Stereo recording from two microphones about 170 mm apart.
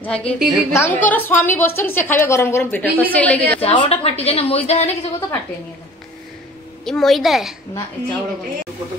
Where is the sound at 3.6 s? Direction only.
35° left (ahead or behind).